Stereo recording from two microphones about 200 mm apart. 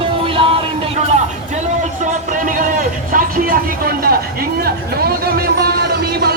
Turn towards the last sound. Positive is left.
turn(degrees=-50)  # may be behind; listen again after turning